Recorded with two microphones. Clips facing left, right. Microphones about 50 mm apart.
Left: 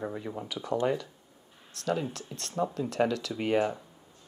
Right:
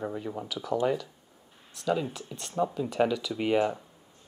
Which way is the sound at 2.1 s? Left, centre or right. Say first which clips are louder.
Right 1 dB; centre.